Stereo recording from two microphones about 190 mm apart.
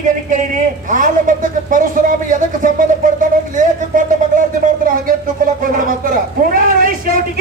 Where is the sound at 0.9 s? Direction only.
45° right (ahead or behind).